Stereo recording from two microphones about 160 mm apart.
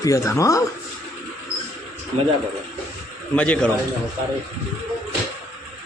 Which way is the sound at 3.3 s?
5° left (ahead or behind).